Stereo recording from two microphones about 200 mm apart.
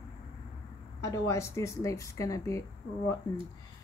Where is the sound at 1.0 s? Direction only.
15° left (ahead or behind).